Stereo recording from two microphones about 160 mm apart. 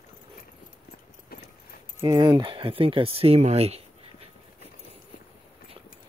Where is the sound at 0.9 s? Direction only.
50° left (ahead or behind).